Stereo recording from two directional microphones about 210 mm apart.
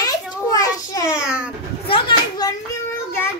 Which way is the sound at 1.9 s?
25° left (ahead or behind).